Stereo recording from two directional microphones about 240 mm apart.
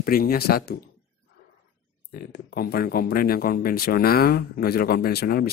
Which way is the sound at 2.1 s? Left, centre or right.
Left.